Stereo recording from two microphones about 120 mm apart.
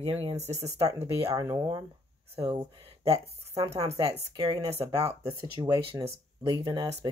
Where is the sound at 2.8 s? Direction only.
55° right (ahead or behind).